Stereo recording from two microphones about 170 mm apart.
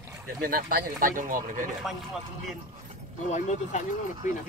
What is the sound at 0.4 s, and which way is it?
Speech, 55° right (ahead or behind).